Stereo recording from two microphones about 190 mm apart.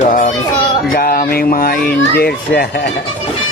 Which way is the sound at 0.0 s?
45° left (ahead or behind).